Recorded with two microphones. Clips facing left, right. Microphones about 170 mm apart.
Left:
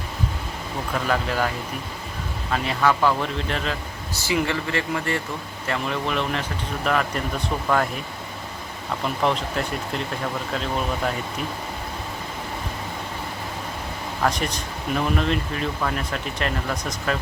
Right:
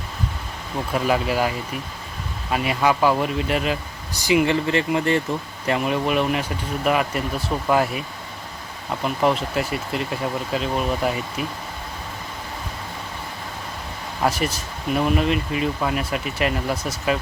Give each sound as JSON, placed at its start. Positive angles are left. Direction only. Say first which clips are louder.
{"t": 0.9, "sound": "speech", "louder": "right 3 dB", "side_deg": -15}
{"t": 9.2, "sound": "speech", "louder": "right 3 dB", "side_deg": -5}
{"t": 14.2, "sound": "speech", "louder": "right 2 dB", "side_deg": -5}